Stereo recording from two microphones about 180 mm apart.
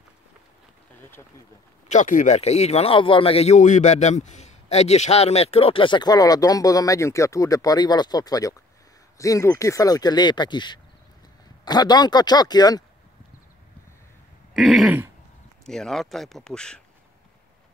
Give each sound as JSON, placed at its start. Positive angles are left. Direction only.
{"t": 1.9, "sound": "speech", "side_deg": 45}
{"t": 14.5, "sound": "speech", "side_deg": 0}